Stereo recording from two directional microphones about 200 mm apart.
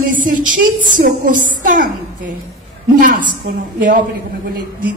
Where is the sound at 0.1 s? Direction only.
40° right (ahead or behind).